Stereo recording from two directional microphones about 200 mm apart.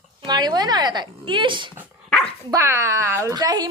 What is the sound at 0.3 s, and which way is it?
Speech, 20° right (ahead or behind).